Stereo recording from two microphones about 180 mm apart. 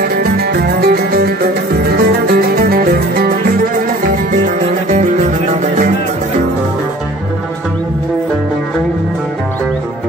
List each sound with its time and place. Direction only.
0.1 s music: 60° right (ahead or behind)